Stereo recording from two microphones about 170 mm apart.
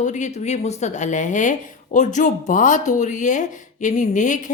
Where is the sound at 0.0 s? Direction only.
45° left (ahead or behind).